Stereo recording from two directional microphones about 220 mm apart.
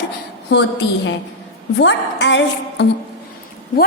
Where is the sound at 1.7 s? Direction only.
55° left (ahead or behind).